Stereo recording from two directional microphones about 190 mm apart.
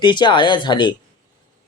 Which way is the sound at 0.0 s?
25° left (ahead or behind).